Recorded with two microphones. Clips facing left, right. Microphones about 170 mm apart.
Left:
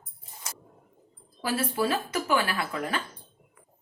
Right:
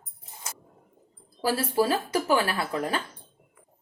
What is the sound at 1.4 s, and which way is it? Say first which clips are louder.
Speech: right 3 dB; 35° right (ahead or behind).